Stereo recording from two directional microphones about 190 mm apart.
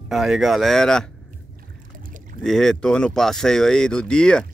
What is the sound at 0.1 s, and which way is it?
Speech, centre (ahead or behind).